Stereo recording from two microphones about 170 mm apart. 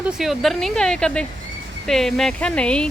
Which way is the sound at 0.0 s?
Centre (ahead or behind).